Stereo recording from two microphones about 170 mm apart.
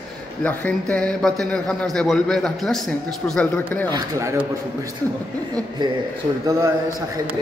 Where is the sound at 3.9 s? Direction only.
25° right (ahead or behind).